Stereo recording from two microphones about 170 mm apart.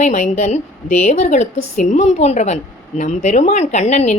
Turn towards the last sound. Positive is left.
turn(degrees=45)  # may be behind; listen again after turning